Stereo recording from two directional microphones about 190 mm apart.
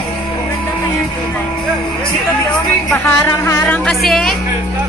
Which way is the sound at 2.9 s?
10° left (ahead or behind).